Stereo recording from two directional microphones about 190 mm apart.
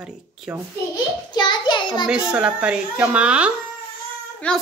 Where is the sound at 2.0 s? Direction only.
5° right (ahead or behind).